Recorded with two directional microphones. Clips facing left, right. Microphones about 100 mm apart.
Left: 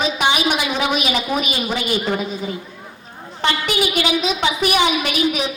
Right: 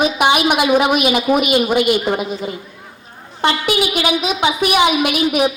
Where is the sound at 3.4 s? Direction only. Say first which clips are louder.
Right 3 dB; 40° right (ahead or behind).